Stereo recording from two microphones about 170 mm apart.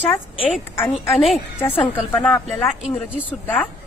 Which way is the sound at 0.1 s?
10° left (ahead or behind).